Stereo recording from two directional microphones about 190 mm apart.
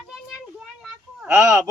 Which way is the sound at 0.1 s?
Centre (ahead or behind).